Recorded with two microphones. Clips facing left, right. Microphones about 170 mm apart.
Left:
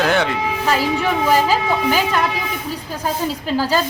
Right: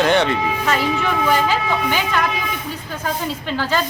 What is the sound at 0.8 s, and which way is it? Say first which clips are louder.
A woman's voice: left 1 dB; 35° left (ahead or behind).